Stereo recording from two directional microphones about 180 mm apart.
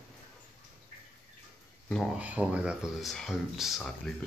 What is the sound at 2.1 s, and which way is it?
Speech, 5° right (ahead or behind).